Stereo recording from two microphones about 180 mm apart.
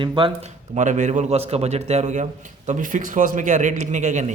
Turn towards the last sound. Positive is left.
turn(degrees=-45)  # may be behind; listen again after turning